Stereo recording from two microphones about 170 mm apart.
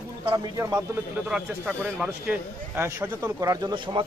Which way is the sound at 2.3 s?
15° right (ahead or behind).